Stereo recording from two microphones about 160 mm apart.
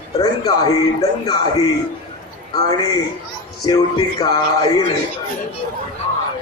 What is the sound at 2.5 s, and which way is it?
A man's voice, 25° left (ahead or behind).